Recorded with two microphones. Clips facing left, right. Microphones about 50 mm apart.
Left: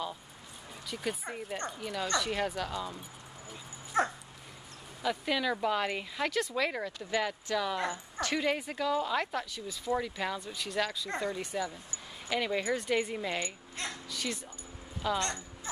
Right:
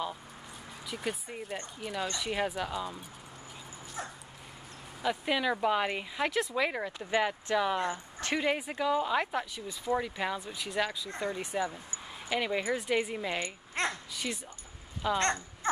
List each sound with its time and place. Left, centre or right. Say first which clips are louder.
0.8 s a woman's voice: even; centre
3.9 s dog: left 12 dB; left
5.0 s speech: right 1 dB; centre
8.4 s a woman's voice: right 2 dB; centre
15.7 s dog: right 11 dB; right